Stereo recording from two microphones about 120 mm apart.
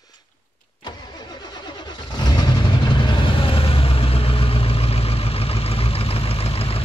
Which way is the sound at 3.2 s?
45° left (ahead or behind).